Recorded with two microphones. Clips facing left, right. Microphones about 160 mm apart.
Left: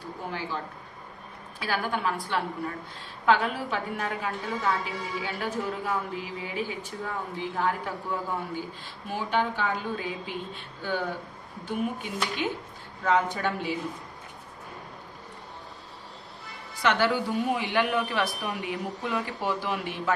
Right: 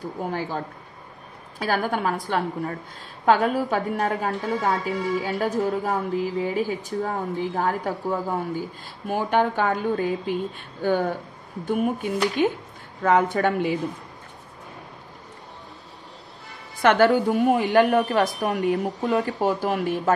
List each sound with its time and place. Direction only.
1.6 s a woman's voice: 45° right (ahead or behind)
16.8 s a woman's voice: 50° right (ahead or behind)